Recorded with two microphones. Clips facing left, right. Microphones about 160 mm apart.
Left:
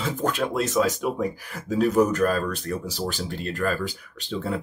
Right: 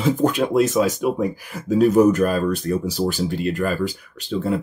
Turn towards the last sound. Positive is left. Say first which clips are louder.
# right 6 dB
turn(degrees=0)  # may be behind; listen again after turning